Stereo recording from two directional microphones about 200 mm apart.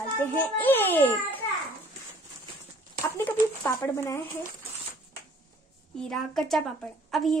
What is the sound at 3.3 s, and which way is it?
Speech, 15° left (ahead or behind).